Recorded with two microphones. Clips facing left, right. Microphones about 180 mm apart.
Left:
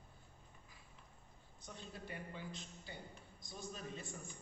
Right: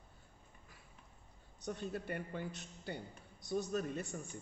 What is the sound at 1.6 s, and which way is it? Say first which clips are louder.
A man's voice: right 11 dB; 60° right (ahead or behind).